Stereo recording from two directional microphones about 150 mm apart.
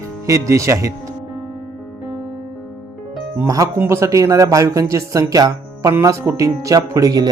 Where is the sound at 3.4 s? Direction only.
20° right (ahead or behind).